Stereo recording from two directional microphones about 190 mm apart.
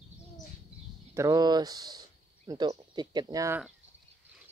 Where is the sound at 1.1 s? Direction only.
15° right (ahead or behind).